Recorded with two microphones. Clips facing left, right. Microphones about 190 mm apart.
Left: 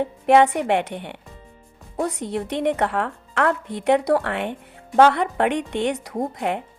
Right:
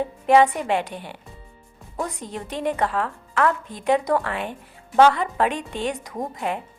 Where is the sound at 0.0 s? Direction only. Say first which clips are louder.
Left 1 dB; 65° left (ahead or behind).